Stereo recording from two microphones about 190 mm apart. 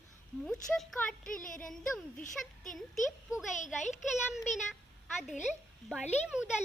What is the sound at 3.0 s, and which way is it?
Speech, centre (ahead or behind).